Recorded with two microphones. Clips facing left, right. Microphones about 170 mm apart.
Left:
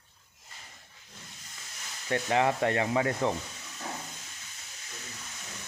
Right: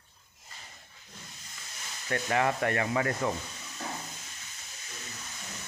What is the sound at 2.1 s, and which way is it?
Rub, 15° left (ahead or behind).